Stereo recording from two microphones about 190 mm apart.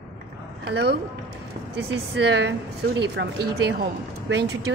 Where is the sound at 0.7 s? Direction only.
65° right (ahead or behind).